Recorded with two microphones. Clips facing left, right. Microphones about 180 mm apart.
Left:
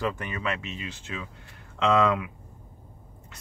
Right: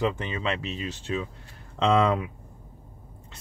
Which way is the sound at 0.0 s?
25° right (ahead or behind).